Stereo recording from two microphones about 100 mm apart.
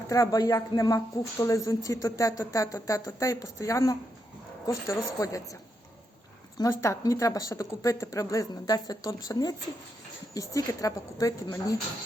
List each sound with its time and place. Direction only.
0.1 s speech: 35° left (ahead or behind)
6.6 s speech: 30° left (ahead or behind)